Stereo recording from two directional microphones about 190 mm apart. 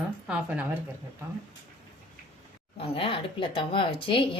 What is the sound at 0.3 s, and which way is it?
Speech, 10° right (ahead or behind).